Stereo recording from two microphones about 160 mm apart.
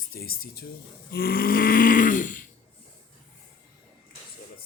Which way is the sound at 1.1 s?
70° left (ahead or behind).